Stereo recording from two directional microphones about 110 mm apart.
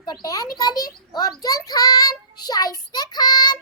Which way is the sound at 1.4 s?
35° left (ahead or behind).